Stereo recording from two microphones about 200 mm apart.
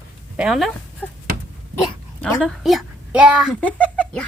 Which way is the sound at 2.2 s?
5° left (ahead or behind).